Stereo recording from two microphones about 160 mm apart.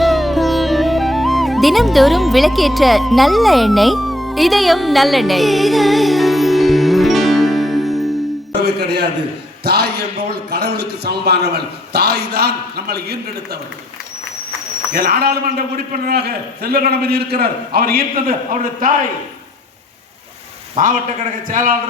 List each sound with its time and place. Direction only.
0.0 s sitar: centre (ahead or behind)
8.5 s speech: 90° right
14.9 s a man's voice: 75° right (ahead or behind); by 18.9 s 60° right (ahead or behind)
20.8 s a man's voice: 55° right (ahead or behind)